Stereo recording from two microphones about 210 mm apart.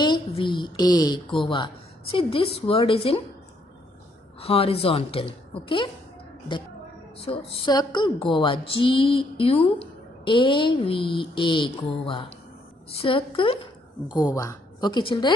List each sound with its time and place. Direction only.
0.0 s speech: 20° left (ahead or behind)
4.4 s speech: 30° left (ahead or behind)
7.2 s speech: 25° left (ahead or behind)